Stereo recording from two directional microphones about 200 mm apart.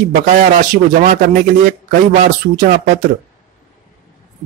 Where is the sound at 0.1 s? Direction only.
45° right (ahead or behind).